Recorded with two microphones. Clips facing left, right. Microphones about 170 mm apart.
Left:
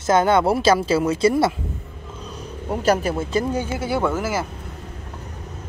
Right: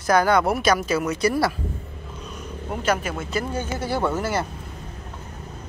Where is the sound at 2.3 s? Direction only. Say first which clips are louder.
Left 4 dB; 35° left (ahead or behind).